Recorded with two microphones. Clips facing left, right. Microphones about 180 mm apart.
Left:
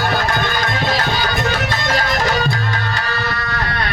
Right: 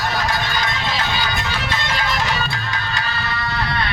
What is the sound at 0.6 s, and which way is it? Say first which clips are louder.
Music: left 4 dB; 50° left (ahead or behind).